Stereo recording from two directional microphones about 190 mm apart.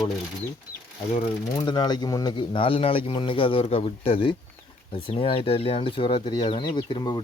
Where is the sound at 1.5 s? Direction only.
25° left (ahead or behind).